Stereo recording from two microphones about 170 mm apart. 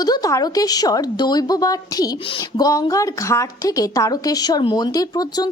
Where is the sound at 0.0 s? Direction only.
20° left (ahead or behind).